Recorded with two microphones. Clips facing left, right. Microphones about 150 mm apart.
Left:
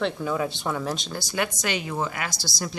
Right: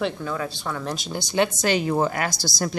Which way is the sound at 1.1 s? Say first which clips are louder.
Right 6 dB; 25° right (ahead or behind).